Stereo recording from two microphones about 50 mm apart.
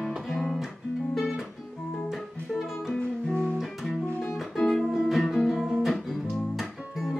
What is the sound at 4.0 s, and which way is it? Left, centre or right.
Music, centre.